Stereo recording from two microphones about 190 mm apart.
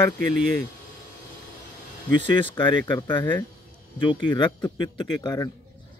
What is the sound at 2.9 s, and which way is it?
Speech, 25° left (ahead or behind).